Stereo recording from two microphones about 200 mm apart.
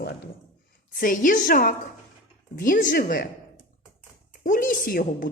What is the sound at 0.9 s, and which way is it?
A woman's voice, 40° left (ahead or behind).